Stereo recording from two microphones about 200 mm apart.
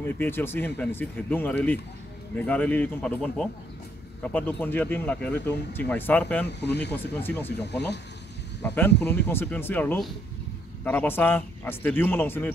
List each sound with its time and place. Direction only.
0.0 s speech: 10° left (ahead or behind)
6.4 s speech: 55° left (ahead or behind)
6.9 s speech: 10° left (ahead or behind)
8.6 s speech: 10° left (ahead or behind)